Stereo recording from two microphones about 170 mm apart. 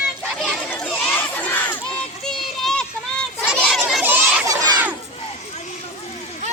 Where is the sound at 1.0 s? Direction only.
10° left (ahead or behind).